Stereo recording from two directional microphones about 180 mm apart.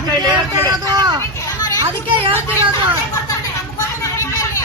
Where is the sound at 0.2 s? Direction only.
20° right (ahead or behind).